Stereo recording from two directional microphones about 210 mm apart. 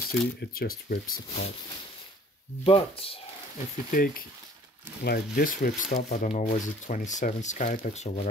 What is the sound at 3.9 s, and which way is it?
Speech, 45° left (ahead or behind).